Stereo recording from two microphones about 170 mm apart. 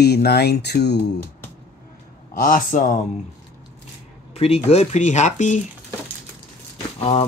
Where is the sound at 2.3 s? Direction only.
55° left (ahead or behind).